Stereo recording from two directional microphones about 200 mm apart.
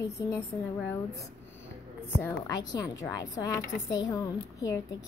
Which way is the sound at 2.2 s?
20° left (ahead or behind).